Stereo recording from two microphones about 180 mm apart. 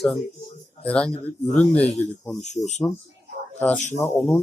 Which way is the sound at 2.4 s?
40° left (ahead or behind).